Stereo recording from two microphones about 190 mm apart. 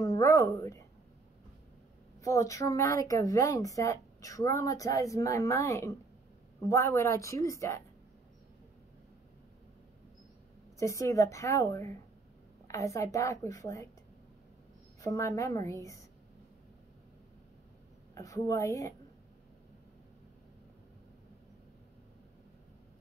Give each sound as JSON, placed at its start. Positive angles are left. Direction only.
{"t": 0.0, "sound": "a woman's voice", "side_deg": 20}
{"t": 2.1, "sound": "a woman's voice", "side_deg": 15}
{"t": 10.8, "sound": "a woman's voice", "side_deg": 15}
{"t": 15.0, "sound": "a woman's voice", "side_deg": 15}
{"t": 18.1, "sound": "a woman's voice", "side_deg": 15}